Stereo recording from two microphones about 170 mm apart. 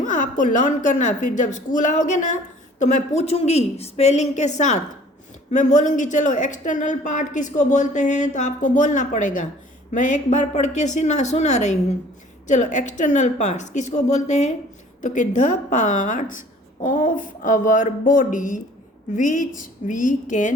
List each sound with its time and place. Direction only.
0.0 s a woman's voice: 50° left (ahead or behind)